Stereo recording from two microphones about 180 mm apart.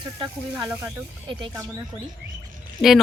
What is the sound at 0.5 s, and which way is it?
Speech, 10° right (ahead or behind).